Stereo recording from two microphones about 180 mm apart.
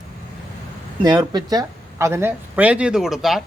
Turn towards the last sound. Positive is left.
turn(degrees=0)  # may be behind; listen again after turning